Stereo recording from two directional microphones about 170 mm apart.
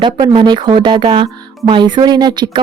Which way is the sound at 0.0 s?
25° right (ahead or behind).